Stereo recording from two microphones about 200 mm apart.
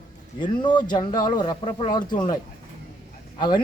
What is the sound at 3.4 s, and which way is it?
Speech, 20° left (ahead or behind).